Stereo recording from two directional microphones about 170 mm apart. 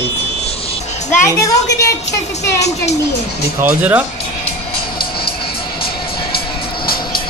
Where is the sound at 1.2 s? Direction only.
20° left (ahead or behind).